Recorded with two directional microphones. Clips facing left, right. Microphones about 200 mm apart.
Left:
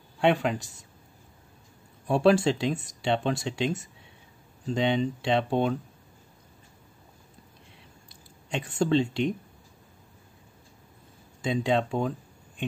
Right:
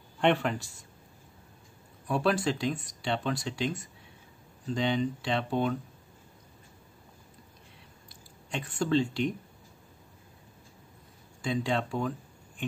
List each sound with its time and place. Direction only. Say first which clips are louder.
0.2 s a man's voice: left 2 dB; 10° left (ahead or behind)
2.0 s speech: left 6 dB; 25° left (ahead or behind)
8.1 s speech: left 4 dB; 25° left (ahead or behind)
11.4 s speech: left 4 dB; 20° left (ahead or behind)